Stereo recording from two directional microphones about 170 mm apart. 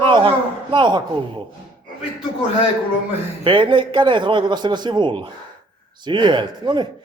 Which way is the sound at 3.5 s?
30° right (ahead or behind).